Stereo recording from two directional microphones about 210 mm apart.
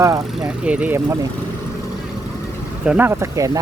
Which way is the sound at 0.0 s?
15° right (ahead or behind).